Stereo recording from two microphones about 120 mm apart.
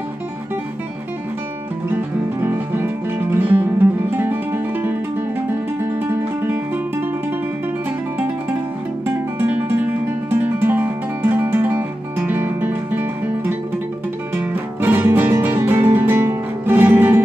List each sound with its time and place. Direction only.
2.4 s music: 20° right (ahead or behind)
9.0 s guitar: 15° right (ahead or behind)
14.3 s music: 15° right (ahead or behind)